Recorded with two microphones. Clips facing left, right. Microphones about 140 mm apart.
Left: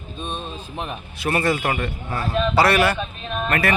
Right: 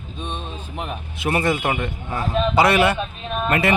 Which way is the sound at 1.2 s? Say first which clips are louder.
Even; 20° right (ahead or behind).